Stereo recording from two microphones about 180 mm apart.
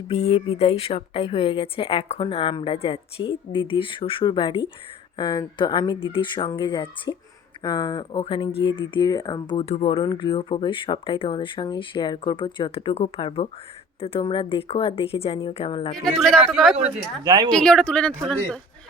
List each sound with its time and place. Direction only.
0.1 s a woman's voice: 35° left (ahead or behind)
16.0 s speech: centre (ahead or behind)
17.2 s speech: 20° right (ahead or behind)
17.5 s speech: 5° left (ahead or behind)